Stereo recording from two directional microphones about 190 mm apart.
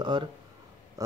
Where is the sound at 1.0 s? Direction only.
15° right (ahead or behind).